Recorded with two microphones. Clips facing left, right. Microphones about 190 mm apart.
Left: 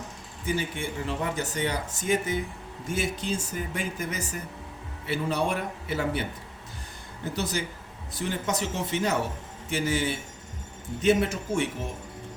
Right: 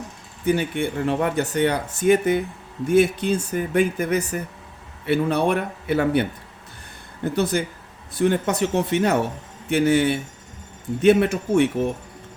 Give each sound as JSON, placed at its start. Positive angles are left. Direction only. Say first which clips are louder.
{"t": 0.4, "sound": "speech", "louder": "right 8 dB", "side_deg": -60}
{"t": 7.3, "sound": "speech", "louder": "right 8 dB", "side_deg": -55}